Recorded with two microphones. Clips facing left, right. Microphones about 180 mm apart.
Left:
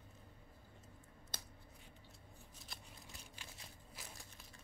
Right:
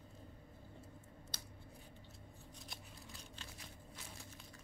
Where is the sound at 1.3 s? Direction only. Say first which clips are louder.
Left 4 dB; 50° left (ahead or behind).